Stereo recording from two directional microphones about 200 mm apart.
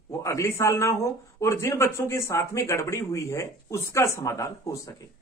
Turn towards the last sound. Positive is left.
turn(degrees=15)  # may be behind; listen again after turning